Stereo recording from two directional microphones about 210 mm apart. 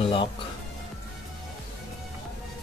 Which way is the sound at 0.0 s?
25° left (ahead or behind).